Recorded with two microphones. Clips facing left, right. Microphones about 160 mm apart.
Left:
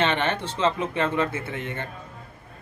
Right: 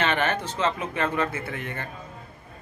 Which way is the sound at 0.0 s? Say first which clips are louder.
Left 1 dB; 25° left (ahead or behind).